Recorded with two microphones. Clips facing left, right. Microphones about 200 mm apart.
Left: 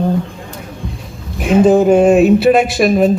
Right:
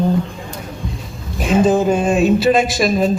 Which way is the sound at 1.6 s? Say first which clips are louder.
Left 6 dB; 60° left (ahead or behind).